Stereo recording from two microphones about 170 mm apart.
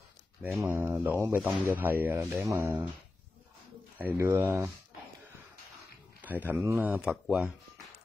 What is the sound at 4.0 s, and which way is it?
Speech, 10° right (ahead or behind).